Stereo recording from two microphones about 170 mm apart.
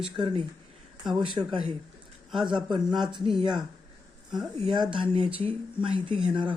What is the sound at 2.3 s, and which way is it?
Speech, 25° right (ahead or behind).